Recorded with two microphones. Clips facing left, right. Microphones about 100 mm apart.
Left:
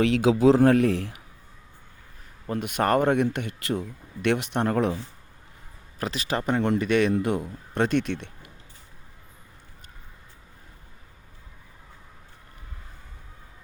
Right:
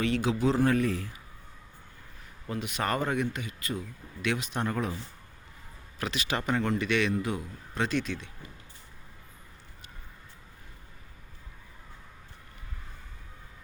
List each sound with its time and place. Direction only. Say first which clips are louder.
0.0 s speech: left 8 dB; 90° left; by 1.2 s 75° left (ahead or behind)
2.5 s speech: left 7 dB; 50° left (ahead or behind)
6.0 s speech: left 4 dB; 35° left (ahead or behind); by 8.4 s 65° left (ahead or behind)